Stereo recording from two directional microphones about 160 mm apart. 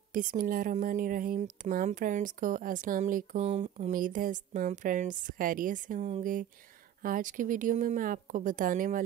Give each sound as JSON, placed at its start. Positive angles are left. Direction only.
{"t": 0.1, "sound": "speech", "side_deg": -55}